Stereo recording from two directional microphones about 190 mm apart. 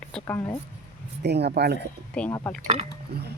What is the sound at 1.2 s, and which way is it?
Speech, 60° right (ahead or behind).